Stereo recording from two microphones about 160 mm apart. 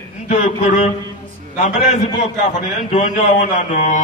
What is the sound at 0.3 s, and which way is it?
Speech, 50° left (ahead or behind).